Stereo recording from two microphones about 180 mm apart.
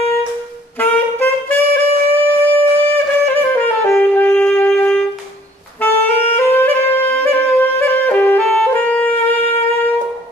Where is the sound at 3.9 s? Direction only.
10° left (ahead or behind).